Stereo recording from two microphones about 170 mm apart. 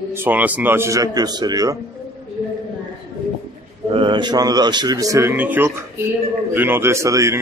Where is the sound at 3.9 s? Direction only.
30° right (ahead or behind).